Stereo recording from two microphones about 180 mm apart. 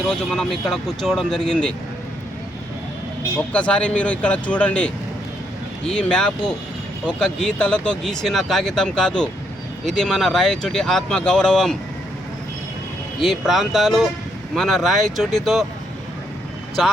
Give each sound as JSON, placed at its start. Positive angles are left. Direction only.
{"t": 0.1, "sound": "speech", "side_deg": 0}
{"t": 3.3, "sound": "speech", "side_deg": 5}
{"t": 13.1, "sound": "speech", "side_deg": 0}